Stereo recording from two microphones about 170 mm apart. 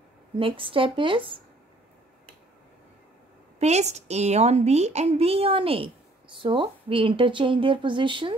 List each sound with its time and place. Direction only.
0.4 s a woman's voice: 30° right (ahead or behind)
3.5 s a woman's voice: 40° right (ahead or behind)